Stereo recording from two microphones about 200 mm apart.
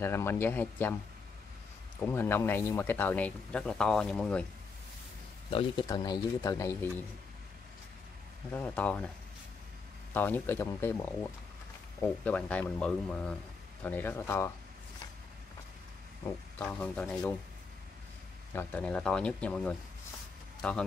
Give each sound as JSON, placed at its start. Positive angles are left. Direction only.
{"t": 0.0, "sound": "speech", "side_deg": 10}
{"t": 2.0, "sound": "speech", "side_deg": 10}
{"t": 5.5, "sound": "speech", "side_deg": 25}
{"t": 8.5, "sound": "speech", "side_deg": 10}
{"t": 10.1, "sound": "speech", "side_deg": 10}
{"t": 12.0, "sound": "speech", "side_deg": 5}
{"t": 16.5, "sound": "speech", "side_deg": 5}
{"t": 18.5, "sound": "speech", "side_deg": 10}